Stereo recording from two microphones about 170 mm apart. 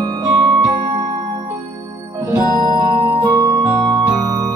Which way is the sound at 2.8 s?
15° right (ahead or behind).